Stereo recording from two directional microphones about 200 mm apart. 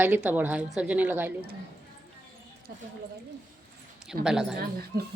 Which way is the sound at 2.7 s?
50° right (ahead or behind).